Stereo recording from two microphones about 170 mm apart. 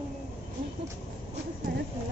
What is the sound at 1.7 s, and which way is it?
Clip-clop, 65° right (ahead or behind).